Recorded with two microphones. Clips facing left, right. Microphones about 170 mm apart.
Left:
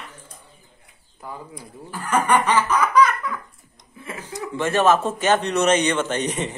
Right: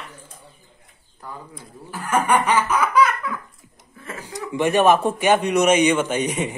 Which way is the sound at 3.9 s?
10° left (ahead or behind).